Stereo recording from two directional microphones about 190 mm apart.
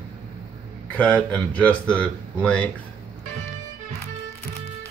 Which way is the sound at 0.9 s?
5° left (ahead or behind).